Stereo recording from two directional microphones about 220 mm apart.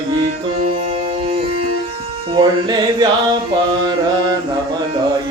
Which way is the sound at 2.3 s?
20° right (ahead or behind).